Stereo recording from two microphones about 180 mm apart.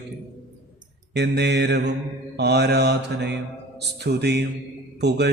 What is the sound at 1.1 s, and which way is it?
Speech, 70° right (ahead or behind).